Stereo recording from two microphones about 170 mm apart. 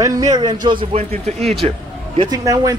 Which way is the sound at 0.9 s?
40° right (ahead or behind).